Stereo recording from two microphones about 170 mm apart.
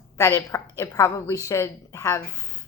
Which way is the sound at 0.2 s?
15° left (ahead or behind).